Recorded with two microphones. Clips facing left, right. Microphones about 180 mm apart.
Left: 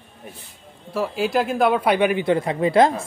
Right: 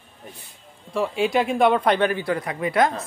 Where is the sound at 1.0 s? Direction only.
Centre (ahead or behind).